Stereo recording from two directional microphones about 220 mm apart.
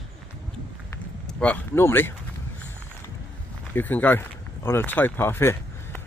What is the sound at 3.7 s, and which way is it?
Speech, 10° left (ahead or behind).